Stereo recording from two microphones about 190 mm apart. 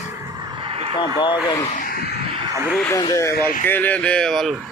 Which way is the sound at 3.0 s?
15° left (ahead or behind).